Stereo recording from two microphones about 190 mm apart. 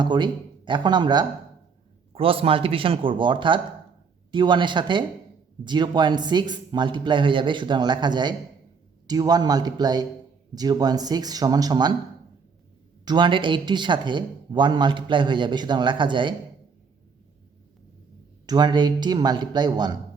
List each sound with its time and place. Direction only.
0.0 s a man's voice: 25° right (ahead or behind)
13.1 s a man's voice: 25° right (ahead or behind)
18.4 s a man's voice: 20° right (ahead or behind)